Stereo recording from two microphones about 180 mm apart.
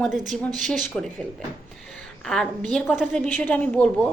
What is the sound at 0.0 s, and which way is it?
Speech, centre (ahead or behind).